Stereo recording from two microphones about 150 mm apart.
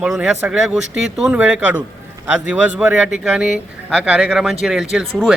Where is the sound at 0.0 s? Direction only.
5° right (ahead or behind).